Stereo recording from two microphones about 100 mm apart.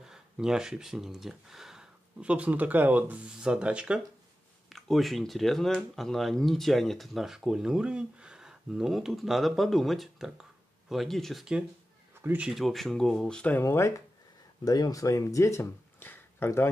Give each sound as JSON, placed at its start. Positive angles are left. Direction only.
{"t": 0.0, "sound": "speech", "side_deg": -5}
{"t": 4.6, "sound": "speech", "side_deg": 0}
{"t": 12.2, "sound": "speech", "side_deg": -20}
{"t": 12.4, "sound": "speech", "side_deg": 0}
{"t": 13.6, "sound": "speech", "side_deg": 25}
{"t": 14.6, "sound": "speech", "side_deg": 40}
{"t": 16.0, "sound": "a sound", "side_deg": 20}